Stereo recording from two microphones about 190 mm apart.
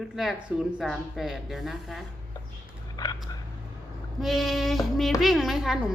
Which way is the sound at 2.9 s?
20° left (ahead or behind).